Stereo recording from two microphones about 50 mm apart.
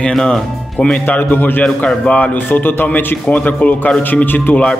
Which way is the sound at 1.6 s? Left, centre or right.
Centre.